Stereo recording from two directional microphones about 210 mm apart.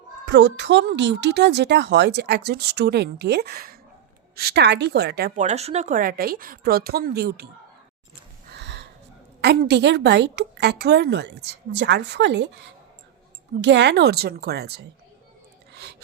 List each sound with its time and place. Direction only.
0.3 s speech: 60° right (ahead or behind)
5.4 s speech: 30° right (ahead or behind); by 7.4 s 50° right (ahead or behind)
8.5 s gasp: 55° right (ahead or behind)
9.4 s a woman's voice: 50° right (ahead or behind)
15.7 s a sound: 50° right (ahead or behind)